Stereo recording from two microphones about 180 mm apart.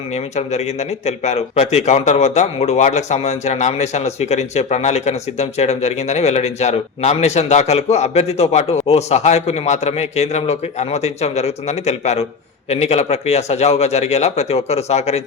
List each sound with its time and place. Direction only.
0.1 s speech: 40° left (ahead or behind)